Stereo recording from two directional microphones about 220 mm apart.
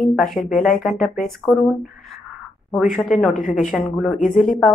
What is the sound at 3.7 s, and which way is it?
Speech, centre (ahead or behind).